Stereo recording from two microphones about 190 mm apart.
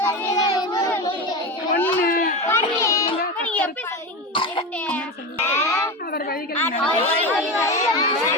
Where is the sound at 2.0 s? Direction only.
50° left (ahead or behind).